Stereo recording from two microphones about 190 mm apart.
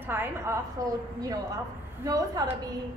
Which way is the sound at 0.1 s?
10° right (ahead or behind).